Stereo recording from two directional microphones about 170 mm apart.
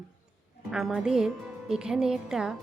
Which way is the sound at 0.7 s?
Centre (ahead or behind).